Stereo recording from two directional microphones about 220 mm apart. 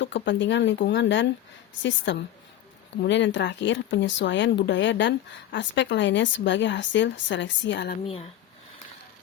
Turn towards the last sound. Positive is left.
turn(degrees=50)  # may be behind; listen again after turning